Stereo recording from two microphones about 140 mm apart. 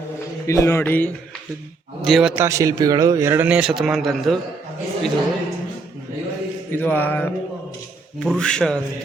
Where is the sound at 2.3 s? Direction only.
20° right (ahead or behind); by 4.4 s centre (ahead or behind).